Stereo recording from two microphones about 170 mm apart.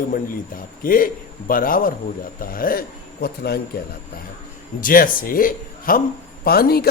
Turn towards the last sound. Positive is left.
turn(degrees=65)  # may be behind; listen again after turning